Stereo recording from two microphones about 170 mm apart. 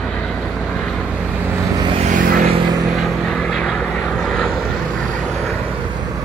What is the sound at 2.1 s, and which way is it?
Vehicle, 50° right (ahead or behind).